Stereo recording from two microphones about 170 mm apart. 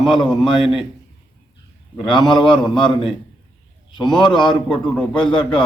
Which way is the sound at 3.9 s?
25° left (ahead or behind).